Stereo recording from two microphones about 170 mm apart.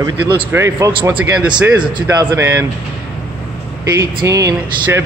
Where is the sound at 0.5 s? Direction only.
15° right (ahead or behind).